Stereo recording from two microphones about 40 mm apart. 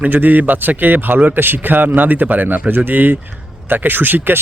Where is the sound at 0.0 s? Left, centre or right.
Right.